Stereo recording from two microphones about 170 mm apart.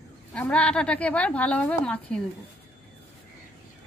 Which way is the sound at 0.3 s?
5° left (ahead or behind).